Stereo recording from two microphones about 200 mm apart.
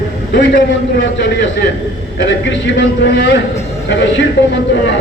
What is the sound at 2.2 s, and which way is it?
A man's voice, 60° left (ahead or behind).